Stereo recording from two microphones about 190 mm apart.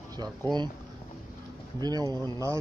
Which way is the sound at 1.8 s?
20° right (ahead or behind).